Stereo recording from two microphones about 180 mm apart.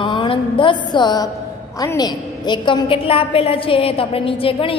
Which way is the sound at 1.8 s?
20° left (ahead or behind).